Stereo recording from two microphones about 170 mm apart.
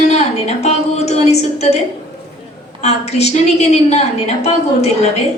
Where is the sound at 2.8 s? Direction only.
40° left (ahead or behind).